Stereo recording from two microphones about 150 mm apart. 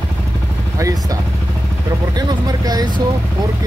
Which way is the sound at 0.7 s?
20° right (ahead or behind).